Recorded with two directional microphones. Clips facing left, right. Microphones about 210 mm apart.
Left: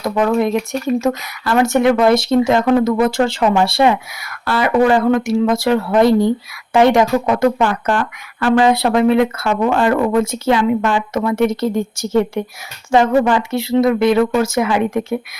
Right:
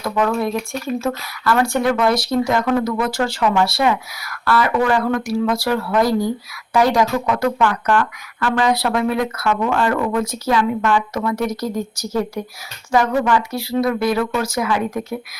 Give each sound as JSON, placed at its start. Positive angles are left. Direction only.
{"t": 0.0, "sound": "speech", "side_deg": 20}